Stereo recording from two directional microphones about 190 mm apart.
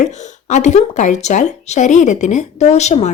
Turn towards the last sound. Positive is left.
turn(degrees=35)  # may be behind; listen again after turning